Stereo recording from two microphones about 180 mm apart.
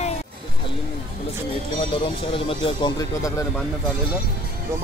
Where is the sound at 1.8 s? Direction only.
30° left (ahead or behind).